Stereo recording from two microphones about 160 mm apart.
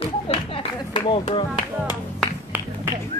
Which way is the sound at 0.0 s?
40° left (ahead or behind).